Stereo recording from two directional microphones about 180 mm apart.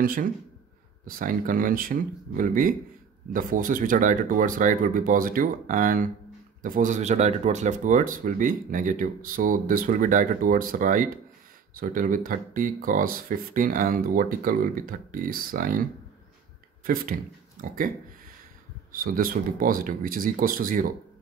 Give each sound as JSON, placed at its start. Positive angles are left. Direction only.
{"t": 0.0, "sound": "speech", "side_deg": -50}
{"t": 16.8, "sound": "speech", "side_deg": -55}